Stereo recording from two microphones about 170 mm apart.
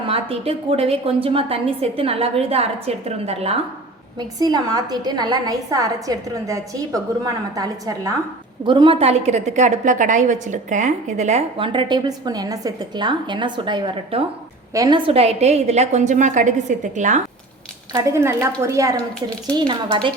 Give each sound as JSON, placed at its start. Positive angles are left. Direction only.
{"t": 0.1, "sound": "a woman's voice", "side_deg": -35}
{"t": 4.4, "sound": "a woman's voice", "side_deg": -25}
{"t": 17.9, "sound": "a woman's voice", "side_deg": -15}